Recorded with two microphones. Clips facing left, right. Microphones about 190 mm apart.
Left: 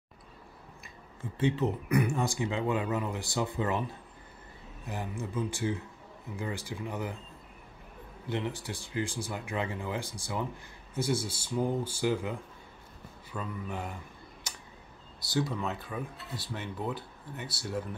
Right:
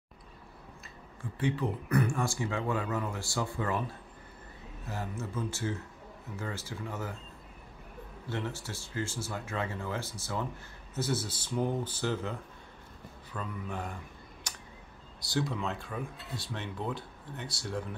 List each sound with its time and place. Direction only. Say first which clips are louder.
1.4 s speech: left 3 dB; 25° left (ahead or behind)
4.8 s speech: left 1 dB; 15° left (ahead or behind)
8.3 s speech: left 3 dB; 15° left (ahead or behind)
15.1 s speech: left 1 dB; centre (ahead or behind)